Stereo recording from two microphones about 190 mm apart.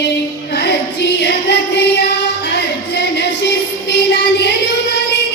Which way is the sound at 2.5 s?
65° left (ahead or behind).